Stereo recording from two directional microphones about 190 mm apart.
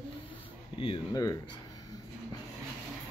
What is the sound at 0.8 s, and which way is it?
Speech, 25° left (ahead or behind).